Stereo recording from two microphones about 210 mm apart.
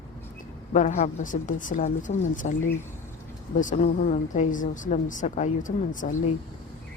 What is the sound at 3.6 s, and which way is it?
A woman's voice, 35° left (ahead or behind).